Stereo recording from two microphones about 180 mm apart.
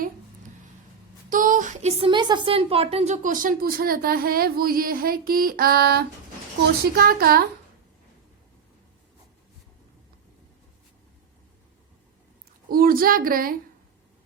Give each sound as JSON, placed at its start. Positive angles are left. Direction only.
{"t": 1.3, "sound": "a woman's voice", "side_deg": -45}
{"t": 12.6, "sound": "a woman's voice", "side_deg": -55}